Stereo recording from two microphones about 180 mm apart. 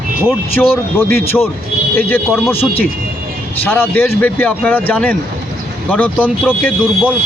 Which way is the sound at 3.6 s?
10° left (ahead or behind).